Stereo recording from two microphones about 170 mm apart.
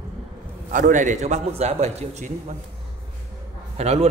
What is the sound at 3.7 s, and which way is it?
Speech, 40° right (ahead or behind).